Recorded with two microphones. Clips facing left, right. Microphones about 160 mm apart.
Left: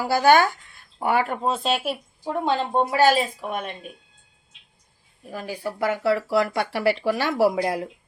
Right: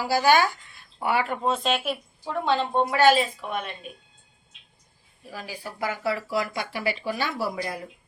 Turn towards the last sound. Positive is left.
turn(degrees=90)